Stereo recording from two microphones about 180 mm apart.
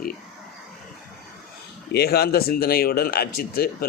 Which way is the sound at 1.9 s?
60° left (ahead or behind).